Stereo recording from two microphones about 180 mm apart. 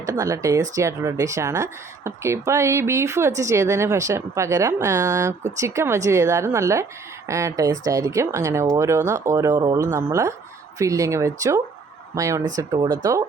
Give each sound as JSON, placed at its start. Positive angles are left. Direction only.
{"t": 0.0, "sound": "speech", "side_deg": -15}